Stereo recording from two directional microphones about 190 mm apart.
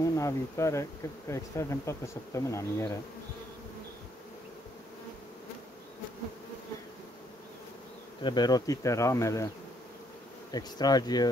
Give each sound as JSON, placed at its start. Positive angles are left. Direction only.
{"t": 0.0, "sound": "speech", "side_deg": 15}
{"t": 8.2, "sound": "speech", "side_deg": 25}
{"t": 10.5, "sound": "bee", "side_deg": 20}